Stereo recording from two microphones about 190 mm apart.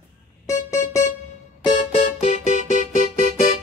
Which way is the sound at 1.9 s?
35° left (ahead or behind).